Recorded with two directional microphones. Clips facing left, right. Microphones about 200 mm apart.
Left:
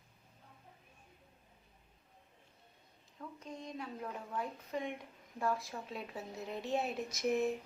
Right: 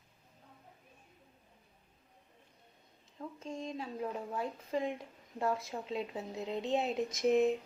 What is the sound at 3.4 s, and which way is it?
A woman's voice, 25° right (ahead or behind).